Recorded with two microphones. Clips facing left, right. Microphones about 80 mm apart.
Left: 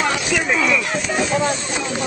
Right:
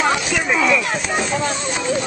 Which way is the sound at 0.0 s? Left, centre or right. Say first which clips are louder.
Right 1 dB; centre.